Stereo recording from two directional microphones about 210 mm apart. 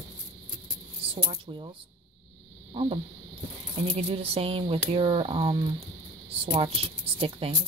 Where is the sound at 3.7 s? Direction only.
30° right (ahead or behind).